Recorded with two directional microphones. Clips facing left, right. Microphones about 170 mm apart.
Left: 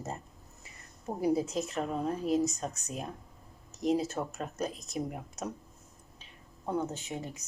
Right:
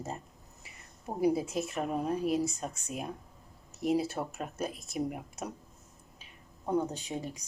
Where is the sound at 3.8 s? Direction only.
10° right (ahead or behind).